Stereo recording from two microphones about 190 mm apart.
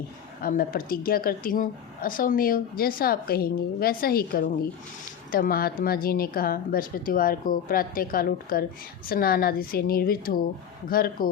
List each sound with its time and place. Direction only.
0.4 s a woman's voice: 45° left (ahead or behind)